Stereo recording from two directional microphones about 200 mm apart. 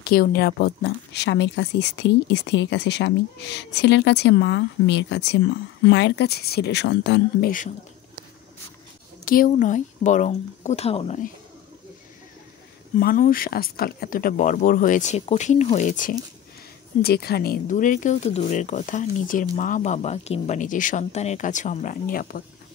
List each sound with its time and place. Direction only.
0.0 s speech: 50° left (ahead or behind)
9.2 s speech: 45° left (ahead or behind)
12.9 s speech: 45° left (ahead or behind)
17.0 s speech: 50° left (ahead or behind)